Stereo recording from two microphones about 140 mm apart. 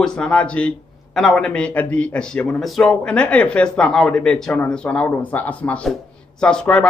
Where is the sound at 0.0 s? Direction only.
5° left (ahead or behind).